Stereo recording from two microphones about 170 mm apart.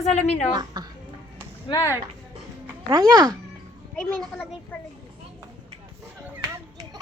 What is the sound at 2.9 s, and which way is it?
Speech, 20° right (ahead or behind).